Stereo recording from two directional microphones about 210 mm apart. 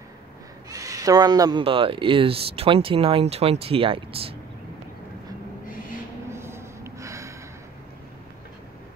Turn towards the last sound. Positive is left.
turn(degrees=-15)  # may be behind; listen again after turning